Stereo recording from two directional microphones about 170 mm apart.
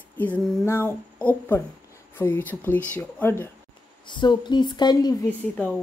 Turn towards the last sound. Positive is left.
turn(degrees=10)  # may be behind; listen again after turning